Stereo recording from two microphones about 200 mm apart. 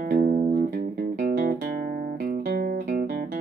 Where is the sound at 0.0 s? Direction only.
40° right (ahead or behind).